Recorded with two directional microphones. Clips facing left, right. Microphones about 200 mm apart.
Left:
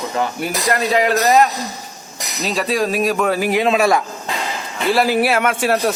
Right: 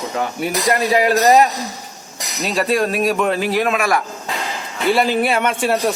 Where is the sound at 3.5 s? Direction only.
20° left (ahead or behind).